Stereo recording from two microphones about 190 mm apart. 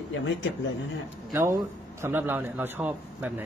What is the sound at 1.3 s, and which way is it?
A man's voice, 15° right (ahead or behind).